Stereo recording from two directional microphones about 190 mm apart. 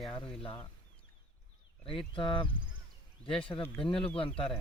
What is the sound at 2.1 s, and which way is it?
Speech, 25° left (ahead or behind).